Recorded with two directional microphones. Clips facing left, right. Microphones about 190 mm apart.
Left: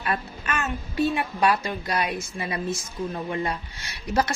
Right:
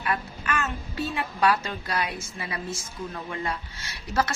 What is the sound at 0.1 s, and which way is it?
A child's voice, 20° left (ahead or behind).